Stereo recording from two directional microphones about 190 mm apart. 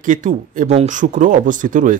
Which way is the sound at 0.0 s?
40° right (ahead or behind).